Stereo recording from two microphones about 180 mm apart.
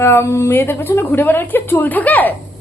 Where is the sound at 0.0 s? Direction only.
15° left (ahead or behind).